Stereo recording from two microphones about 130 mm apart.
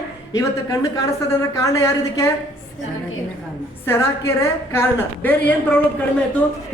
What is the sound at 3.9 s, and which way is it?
A woman's voice, 20° left (ahead or behind).